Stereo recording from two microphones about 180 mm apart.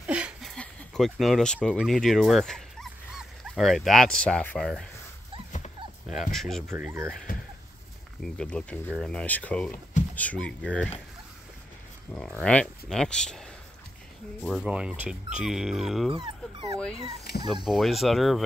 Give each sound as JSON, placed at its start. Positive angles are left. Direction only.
{"t": 0.0, "sound": "a sound", "side_deg": -5}
{"t": 6.3, "sound": "speech", "side_deg": 0}
{"t": 6.7, "sound": "speech", "side_deg": -15}
{"t": 8.2, "sound": "speech", "side_deg": 5}
{"t": 12.1, "sound": "speech", "side_deg": 5}
{"t": 16.1, "sound": "dog", "side_deg": -30}
{"t": 17.6, "sound": "speech", "side_deg": 0}